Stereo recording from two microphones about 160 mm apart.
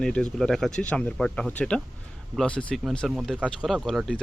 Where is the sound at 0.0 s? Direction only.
5° left (ahead or behind).